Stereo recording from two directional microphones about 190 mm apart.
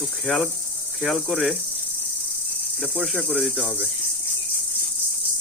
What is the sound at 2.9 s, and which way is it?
Speech, centre (ahead or behind).